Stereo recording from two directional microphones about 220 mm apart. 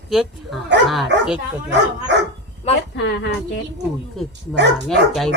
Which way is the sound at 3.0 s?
55° left (ahead or behind).